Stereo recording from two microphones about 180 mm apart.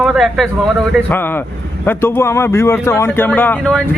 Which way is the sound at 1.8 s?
10° left (ahead or behind).